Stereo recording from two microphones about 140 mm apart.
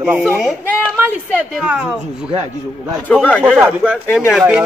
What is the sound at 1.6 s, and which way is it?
Speech, 5° right (ahead or behind).